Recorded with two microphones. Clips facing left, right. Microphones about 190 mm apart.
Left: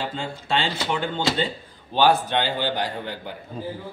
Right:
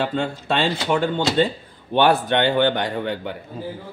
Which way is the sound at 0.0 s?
60° right (ahead or behind).